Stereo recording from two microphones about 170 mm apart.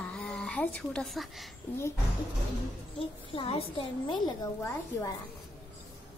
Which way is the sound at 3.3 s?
30° left (ahead or behind).